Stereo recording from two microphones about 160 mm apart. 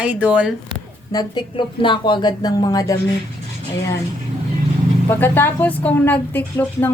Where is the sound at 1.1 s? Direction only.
30° left (ahead or behind).